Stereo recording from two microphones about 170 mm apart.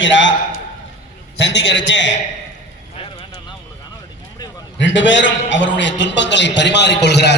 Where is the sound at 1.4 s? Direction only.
90° left.